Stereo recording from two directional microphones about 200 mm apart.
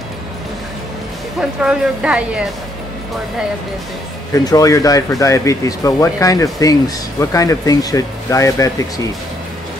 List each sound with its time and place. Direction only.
1.6 s a woman's voice: 5° right (ahead or behind)
4.3 s speech: 15° left (ahead or behind)